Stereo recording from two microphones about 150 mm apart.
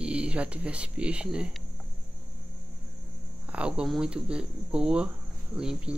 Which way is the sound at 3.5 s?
5° right (ahead or behind).